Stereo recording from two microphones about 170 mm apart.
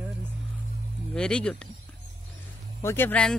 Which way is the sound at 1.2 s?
5° left (ahead or behind).